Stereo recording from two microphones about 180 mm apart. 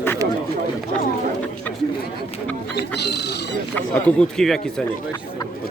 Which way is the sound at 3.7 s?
5° left (ahead or behind).